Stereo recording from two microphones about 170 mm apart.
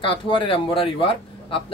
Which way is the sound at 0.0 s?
30° left (ahead or behind).